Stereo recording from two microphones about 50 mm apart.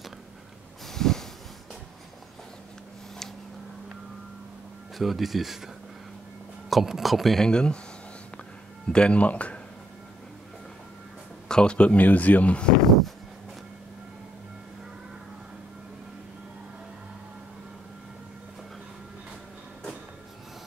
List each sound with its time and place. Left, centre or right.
0.9 s a sound: centre
4.9 s speech: centre
6.7 s speech: centre
7.4 s speech: centre
8.8 s speech: centre
11.4 s speech: centre
12.0 s speech: left
12.8 s speech: centre